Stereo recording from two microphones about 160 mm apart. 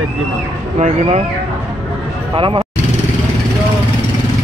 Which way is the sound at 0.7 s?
45° right (ahead or behind).